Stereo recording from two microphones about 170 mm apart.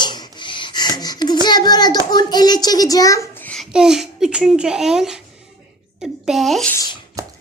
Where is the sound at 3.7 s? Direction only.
5° right (ahead or behind).